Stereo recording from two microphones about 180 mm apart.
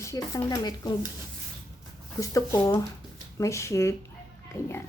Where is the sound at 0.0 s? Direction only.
15° left (ahead or behind).